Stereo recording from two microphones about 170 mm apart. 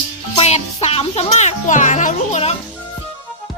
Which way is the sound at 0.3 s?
40° left (ahead or behind).